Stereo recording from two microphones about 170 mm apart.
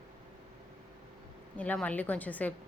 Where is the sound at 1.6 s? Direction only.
10° left (ahead or behind).